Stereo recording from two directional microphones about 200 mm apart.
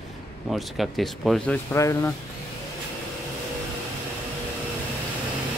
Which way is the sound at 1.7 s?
15° left (ahead or behind).